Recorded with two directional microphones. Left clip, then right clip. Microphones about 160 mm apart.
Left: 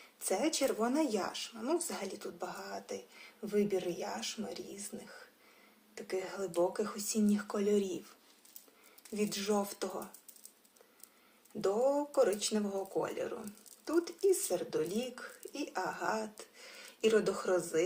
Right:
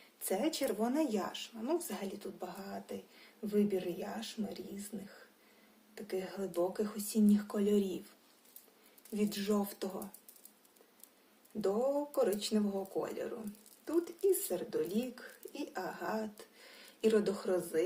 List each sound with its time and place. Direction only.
0.3 s a woman's voice: 20° right (ahead or behind)
6.0 s a woman's voice: 15° right (ahead or behind)
7.5 s speech: 25° right (ahead or behind)
9.1 s speech: 15° right (ahead or behind)
11.6 s a woman's voice: 15° right (ahead or behind)